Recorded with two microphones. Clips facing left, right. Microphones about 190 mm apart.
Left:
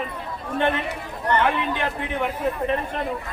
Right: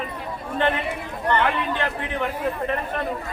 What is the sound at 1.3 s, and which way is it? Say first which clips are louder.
Speech: left 1 dB; 10° left (ahead or behind).